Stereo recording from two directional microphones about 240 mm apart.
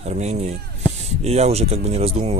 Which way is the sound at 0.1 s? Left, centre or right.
Right.